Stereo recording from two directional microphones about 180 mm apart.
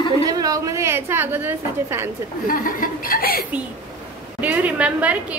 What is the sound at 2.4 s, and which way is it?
Speech, 50° left (ahead or behind).